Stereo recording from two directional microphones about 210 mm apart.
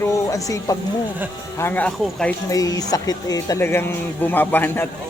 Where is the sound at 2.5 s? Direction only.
15° left (ahead or behind).